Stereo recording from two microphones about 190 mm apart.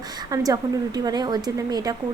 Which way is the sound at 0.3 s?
20° right (ahead or behind).